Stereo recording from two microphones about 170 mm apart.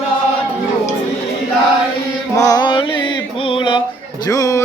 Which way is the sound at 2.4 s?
20° left (ahead or behind).